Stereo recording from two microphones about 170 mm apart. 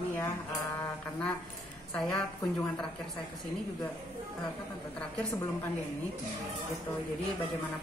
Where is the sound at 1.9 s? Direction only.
5° left (ahead or behind).